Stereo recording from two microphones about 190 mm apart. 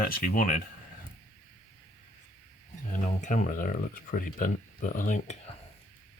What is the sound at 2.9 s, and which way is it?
Speech, 40° left (ahead or behind).